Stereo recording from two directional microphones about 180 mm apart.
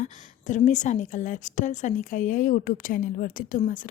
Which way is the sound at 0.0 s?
45° left (ahead or behind).